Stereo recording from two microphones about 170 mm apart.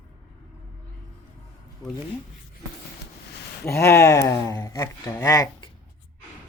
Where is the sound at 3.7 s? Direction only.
15° left (ahead or behind).